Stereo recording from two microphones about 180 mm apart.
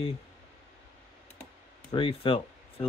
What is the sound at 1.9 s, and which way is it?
Speech, 30° left (ahead or behind).